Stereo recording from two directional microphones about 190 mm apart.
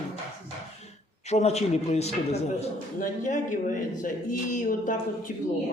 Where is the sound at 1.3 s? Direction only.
35° left (ahead or behind).